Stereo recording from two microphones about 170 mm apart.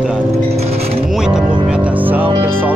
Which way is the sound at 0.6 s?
40° right (ahead or behind).